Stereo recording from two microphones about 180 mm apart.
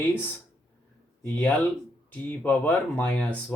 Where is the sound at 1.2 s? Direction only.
10° left (ahead or behind).